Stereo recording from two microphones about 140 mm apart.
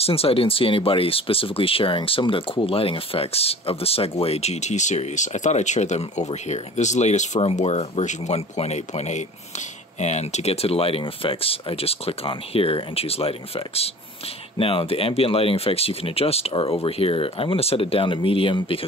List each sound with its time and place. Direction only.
0.0 s speech: 45° left (ahead or behind)